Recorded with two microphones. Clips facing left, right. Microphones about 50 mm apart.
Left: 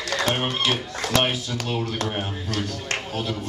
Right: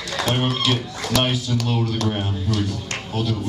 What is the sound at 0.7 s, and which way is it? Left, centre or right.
Speech, left.